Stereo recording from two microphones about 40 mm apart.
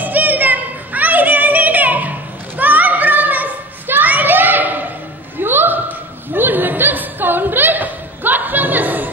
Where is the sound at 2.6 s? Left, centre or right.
Right.